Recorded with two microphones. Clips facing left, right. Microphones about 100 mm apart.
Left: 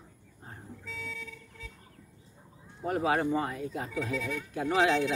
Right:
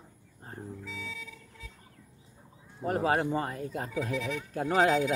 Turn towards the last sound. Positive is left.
turn(degrees=-45)  # may be behind; listen again after turning